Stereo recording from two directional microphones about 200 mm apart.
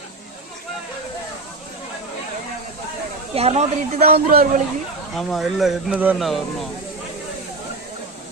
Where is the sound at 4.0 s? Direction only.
50° right (ahead or behind).